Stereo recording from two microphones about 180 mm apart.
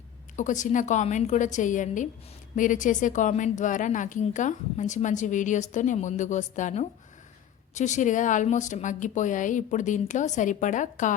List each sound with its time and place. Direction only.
0.3 s a woman's voice: 45° left (ahead or behind)